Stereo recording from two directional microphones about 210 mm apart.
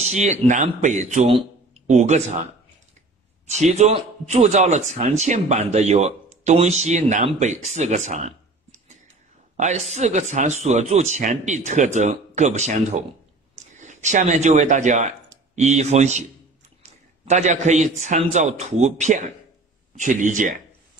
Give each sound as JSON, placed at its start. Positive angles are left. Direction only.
{"t": 0.0, "sound": "a man's voice", "side_deg": -35}
{"t": 3.4, "sound": "a man's voice", "side_deg": -30}